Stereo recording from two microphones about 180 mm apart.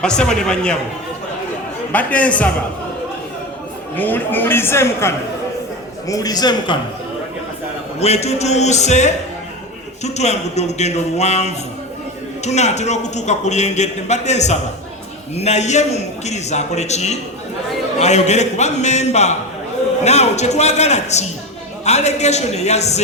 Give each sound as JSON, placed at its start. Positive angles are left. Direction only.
{"t": 0.0, "sound": "a man's voice", "side_deg": 5}
{"t": 1.9, "sound": "a man's voice", "side_deg": 10}
{"t": 3.9, "sound": "a man's voice", "side_deg": 10}
{"t": 7.9, "sound": "a man's voice", "side_deg": 35}